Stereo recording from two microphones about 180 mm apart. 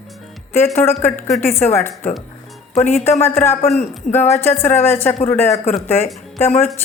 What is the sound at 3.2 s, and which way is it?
Speech, 15° left (ahead or behind).